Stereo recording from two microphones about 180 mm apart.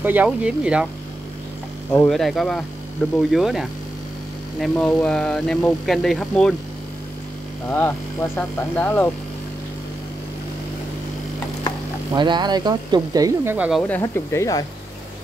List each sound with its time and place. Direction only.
0.0 s speech: 10° right (ahead or behind)
1.9 s speech: 5° left (ahead or behind)
7.7 s speech: 10° left (ahead or behind)
12.1 s speech: 25° right (ahead or behind)
13.8 s speech: 10° left (ahead or behind)